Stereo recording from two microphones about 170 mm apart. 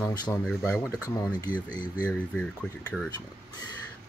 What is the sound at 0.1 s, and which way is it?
Speech, 25° left (ahead or behind).